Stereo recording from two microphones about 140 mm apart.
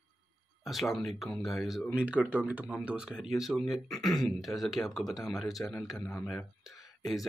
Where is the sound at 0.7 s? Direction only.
Centre (ahead or behind).